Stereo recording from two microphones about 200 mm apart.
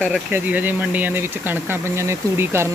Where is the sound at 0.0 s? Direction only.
10° right (ahead or behind).